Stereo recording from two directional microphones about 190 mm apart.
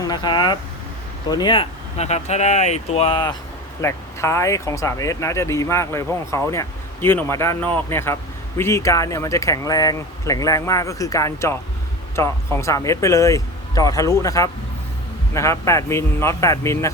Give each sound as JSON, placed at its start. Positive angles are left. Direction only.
{"t": 0.0, "sound": "speech", "side_deg": 20}
{"t": 3.8, "sound": "speech", "side_deg": 15}